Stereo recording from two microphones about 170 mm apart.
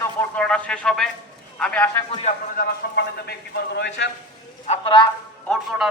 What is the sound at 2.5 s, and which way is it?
Speech, 65° left (ahead or behind).